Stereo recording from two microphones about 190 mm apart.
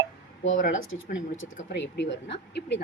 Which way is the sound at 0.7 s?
90° left.